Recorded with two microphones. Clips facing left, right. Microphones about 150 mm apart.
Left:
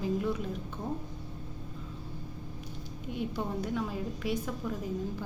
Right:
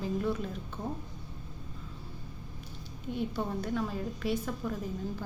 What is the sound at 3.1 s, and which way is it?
A woman's voice, 15° left (ahead or behind).